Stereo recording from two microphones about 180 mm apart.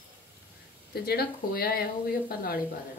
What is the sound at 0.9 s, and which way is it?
A woman's voice, 60° left (ahead or behind).